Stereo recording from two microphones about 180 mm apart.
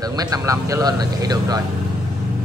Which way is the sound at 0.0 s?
20° right (ahead or behind).